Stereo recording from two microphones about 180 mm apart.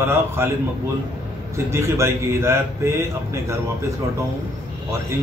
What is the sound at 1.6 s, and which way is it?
Speech, 15° right (ahead or behind).